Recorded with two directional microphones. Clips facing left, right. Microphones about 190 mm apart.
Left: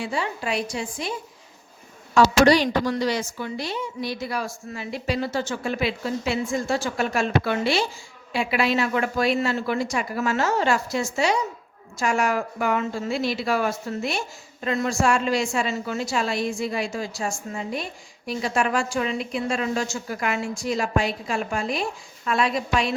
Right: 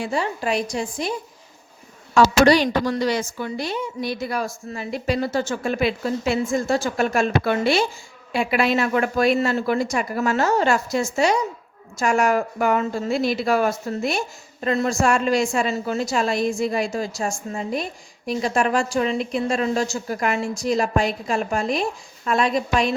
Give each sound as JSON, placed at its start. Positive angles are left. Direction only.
{"t": 0.0, "sound": "a woman's voice", "side_deg": -45}
{"t": 2.1, "sound": "a woman's voice", "side_deg": -55}